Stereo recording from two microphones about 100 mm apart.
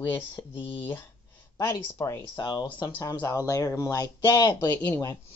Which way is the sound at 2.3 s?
45° left (ahead or behind).